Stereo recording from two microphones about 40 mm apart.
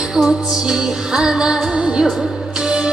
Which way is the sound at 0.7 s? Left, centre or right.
Centre.